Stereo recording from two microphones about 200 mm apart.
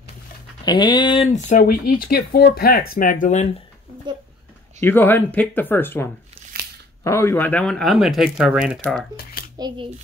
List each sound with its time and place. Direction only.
0.7 s speech: 20° left (ahead or behind); by 3.4 s 40° left (ahead or behind)
4.7 s speech: 10° left (ahead or behind)
9.2 s a child's voice: 50° left (ahead or behind)
9.6 s a child's voice: 20° right (ahead or behind)